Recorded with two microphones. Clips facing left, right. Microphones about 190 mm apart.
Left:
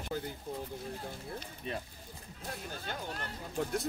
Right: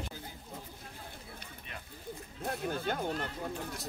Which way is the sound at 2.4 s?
60° right (ahead or behind).